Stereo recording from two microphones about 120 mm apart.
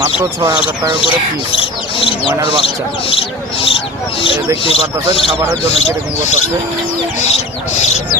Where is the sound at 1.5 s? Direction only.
50° left (ahead or behind).